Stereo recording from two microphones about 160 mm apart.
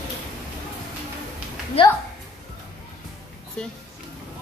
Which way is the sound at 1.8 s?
35° left (ahead or behind).